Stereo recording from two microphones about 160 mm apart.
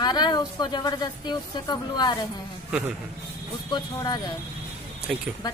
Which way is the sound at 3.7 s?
25° left (ahead or behind).